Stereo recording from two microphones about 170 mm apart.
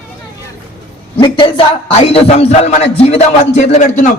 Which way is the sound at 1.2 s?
25° left (ahead or behind).